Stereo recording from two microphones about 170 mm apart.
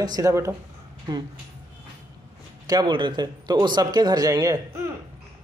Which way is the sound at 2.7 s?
25° right (ahead or behind).